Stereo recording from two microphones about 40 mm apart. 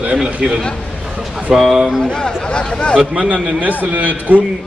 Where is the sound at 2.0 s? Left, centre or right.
Left.